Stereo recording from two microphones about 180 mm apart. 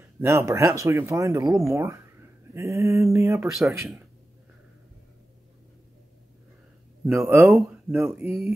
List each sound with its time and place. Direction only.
0.2 s speech: 15° right (ahead or behind)
3.5 s speech: centre (ahead or behind)
7.2 s speech: 10° right (ahead or behind)